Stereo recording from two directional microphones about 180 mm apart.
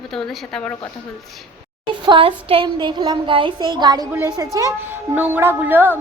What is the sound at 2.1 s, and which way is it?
A woman's voice, 30° right (ahead or behind).